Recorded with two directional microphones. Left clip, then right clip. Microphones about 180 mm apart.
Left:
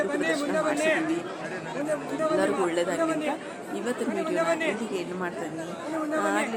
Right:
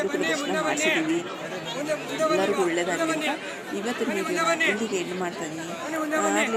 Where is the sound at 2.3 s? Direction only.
Centre (ahead or behind).